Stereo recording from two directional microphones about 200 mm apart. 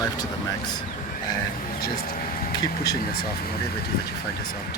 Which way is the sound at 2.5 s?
20° left (ahead or behind).